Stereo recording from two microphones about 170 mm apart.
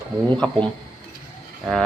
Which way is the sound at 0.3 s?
5° left (ahead or behind).